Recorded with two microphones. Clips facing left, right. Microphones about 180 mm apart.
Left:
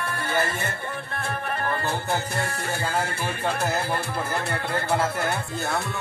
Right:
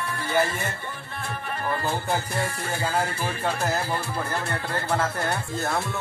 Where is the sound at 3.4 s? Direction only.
Centre (ahead or behind).